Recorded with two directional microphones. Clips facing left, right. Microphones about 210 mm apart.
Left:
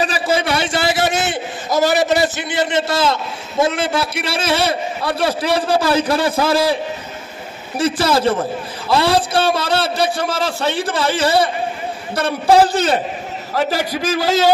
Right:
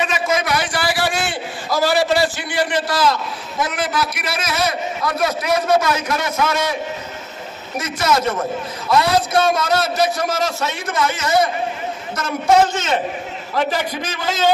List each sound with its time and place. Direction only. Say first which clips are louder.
0.0 s a man's voice: left 2 dB; 30° left (ahead or behind)